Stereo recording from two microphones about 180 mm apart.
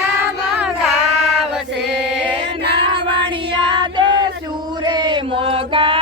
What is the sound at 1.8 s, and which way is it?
Music, 75° right (ahead or behind).